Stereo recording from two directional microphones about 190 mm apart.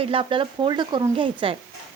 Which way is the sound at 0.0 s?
30° right (ahead or behind).